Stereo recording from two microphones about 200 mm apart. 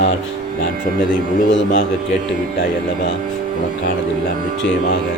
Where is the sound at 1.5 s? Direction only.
65° left (ahead or behind).